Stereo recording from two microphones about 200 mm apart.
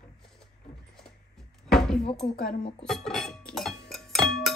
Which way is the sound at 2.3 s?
45° left (ahead or behind).